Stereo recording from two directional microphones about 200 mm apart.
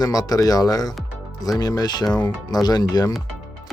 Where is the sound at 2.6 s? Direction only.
20° left (ahead or behind).